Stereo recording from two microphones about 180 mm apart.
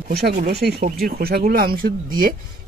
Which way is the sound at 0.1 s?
65° right (ahead or behind).